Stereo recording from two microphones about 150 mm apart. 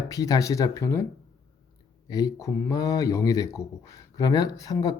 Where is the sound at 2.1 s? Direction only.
20° left (ahead or behind).